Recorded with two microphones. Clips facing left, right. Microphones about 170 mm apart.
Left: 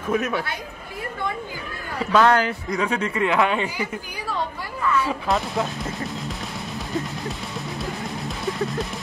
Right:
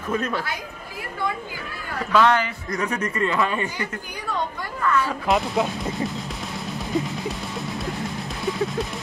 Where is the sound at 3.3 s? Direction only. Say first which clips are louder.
Left 4 dB; 80° left.